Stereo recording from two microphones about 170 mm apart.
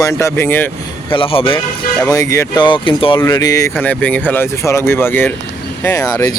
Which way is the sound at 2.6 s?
30° left (ahead or behind).